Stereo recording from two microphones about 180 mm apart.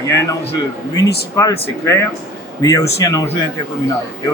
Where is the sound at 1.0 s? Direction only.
20° left (ahead or behind).